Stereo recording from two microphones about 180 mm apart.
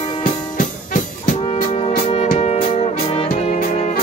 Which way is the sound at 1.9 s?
40° left (ahead or behind).